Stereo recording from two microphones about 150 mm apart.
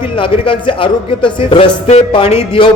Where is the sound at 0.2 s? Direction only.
35° left (ahead or behind).